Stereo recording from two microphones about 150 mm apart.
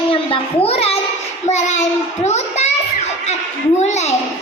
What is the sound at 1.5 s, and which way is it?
Speech, 50° left (ahead or behind).